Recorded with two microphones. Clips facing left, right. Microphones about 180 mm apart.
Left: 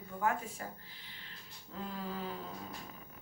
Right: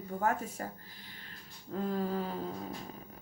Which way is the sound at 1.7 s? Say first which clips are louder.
Right 8 dB; 45° right (ahead or behind).